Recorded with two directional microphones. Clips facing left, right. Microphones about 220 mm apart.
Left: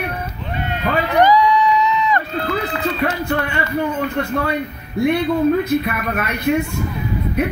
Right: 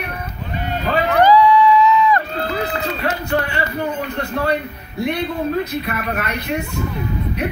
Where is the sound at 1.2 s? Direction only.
15° left (ahead or behind).